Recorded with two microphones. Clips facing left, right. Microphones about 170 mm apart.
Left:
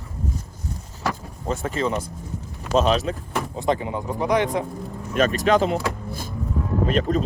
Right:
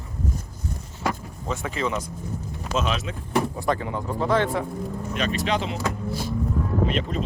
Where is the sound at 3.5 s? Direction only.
20° left (ahead or behind).